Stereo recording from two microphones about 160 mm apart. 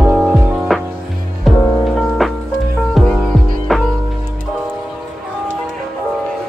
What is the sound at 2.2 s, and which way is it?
Music, centre (ahead or behind).